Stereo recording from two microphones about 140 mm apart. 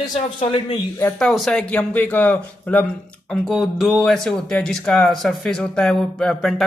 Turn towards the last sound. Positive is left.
turn(degrees=5)  # may be behind; listen again after turning